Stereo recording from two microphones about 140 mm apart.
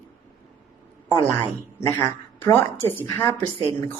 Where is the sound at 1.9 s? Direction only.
15° left (ahead or behind).